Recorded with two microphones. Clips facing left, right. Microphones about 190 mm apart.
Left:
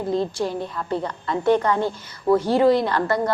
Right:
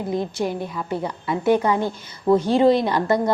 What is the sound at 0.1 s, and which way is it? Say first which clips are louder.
A woman's voice: left 1 dB; 15° right (ahead or behind).